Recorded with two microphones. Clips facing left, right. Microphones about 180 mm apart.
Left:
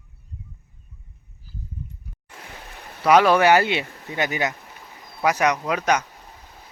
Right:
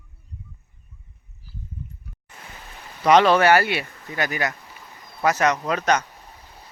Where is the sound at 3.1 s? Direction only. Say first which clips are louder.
Even; 10° left (ahead or behind).